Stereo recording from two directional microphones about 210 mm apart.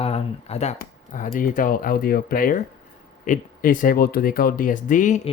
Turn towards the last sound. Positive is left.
turn(degrees=35)  # may be behind; listen again after turning